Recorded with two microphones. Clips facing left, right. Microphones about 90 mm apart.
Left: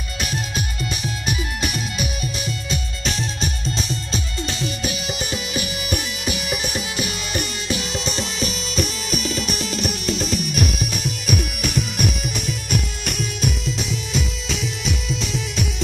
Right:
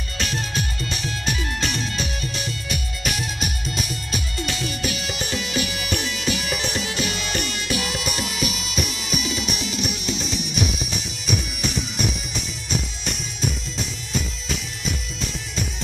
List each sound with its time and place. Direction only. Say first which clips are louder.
0.2 s music: even; 20° left (ahead or behind); by 13.5 s 60° left (ahead or behind)
15.0 s music: left 6 dB; 75° left (ahead or behind)